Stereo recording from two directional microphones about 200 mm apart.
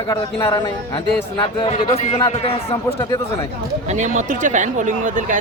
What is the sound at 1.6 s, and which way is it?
A man's voice, 30° left (ahead or behind).